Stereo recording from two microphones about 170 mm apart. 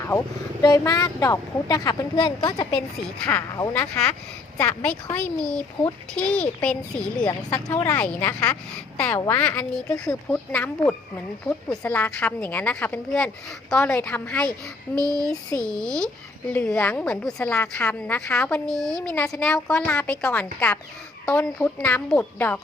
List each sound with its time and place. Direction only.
0.6 s speech: 20° left (ahead or behind)
3.2 s a woman's voice: 15° left (ahead or behind)
14.9 s speech: 20° right (ahead or behind)
15.6 s a woman's voice: 5° left (ahead or behind)